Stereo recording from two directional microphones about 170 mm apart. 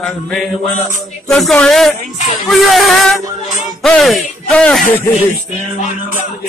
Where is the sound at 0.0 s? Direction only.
Centre (ahead or behind).